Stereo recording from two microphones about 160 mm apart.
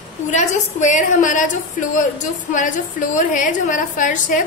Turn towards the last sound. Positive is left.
turn(degrees=55)  # may be behind; listen again after turning